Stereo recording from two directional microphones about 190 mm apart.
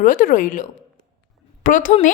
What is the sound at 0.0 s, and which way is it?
A woman's voice, 45° left (ahead or behind).